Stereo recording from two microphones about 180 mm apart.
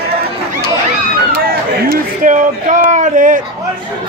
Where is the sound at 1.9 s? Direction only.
45° right (ahead or behind).